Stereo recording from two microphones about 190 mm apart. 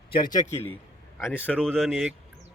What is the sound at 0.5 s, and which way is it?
A man's voice, 10° left (ahead or behind).